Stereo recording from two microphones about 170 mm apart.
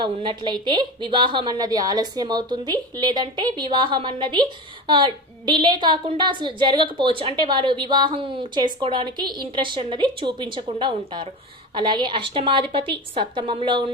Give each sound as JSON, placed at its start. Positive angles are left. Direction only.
{"t": 0.0, "sound": "a woman's voice", "side_deg": -30}